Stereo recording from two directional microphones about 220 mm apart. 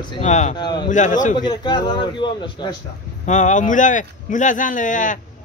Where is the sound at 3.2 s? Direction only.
35° left (ahead or behind).